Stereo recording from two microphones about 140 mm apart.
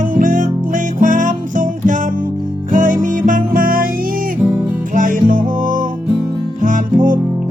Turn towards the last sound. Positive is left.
turn(degrees=-65)  # may be behind; listen again after turning